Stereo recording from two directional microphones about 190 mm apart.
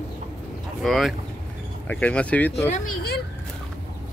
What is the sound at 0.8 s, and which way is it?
Speech, centre (ahead or behind).